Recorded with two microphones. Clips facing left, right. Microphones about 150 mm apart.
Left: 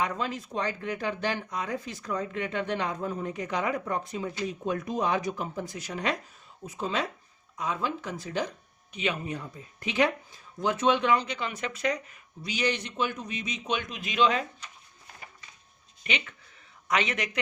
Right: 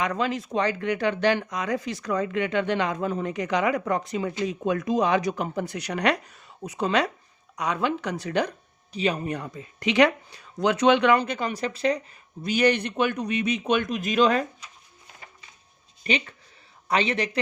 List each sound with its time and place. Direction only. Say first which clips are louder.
0.0 s speech: right 4 dB; 90° right; by 8.5 s 65° right (ahead or behind)
8.9 s speech: right 5 dB; 35° right (ahead or behind)
9.2 s speech: right 5 dB; 65° right (ahead or behind); by 12.0 s 30° right (ahead or behind)
12.4 s a man's voice: right 8 dB; 55° right (ahead or behind)
16.0 s speech: right 6 dB; 35° right (ahead or behind)